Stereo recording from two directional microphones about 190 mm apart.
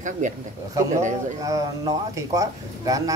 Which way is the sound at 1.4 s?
20° right (ahead or behind).